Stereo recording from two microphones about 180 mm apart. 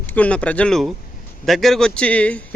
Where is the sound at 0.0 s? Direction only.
10° left (ahead or behind).